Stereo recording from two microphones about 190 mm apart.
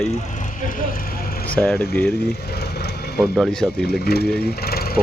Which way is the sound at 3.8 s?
55° left (ahead or behind).